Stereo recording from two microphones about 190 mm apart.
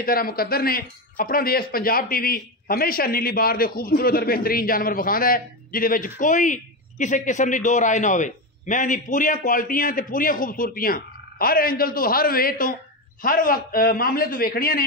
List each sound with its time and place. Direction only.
0.0 s speech: 50° left (ahead or behind)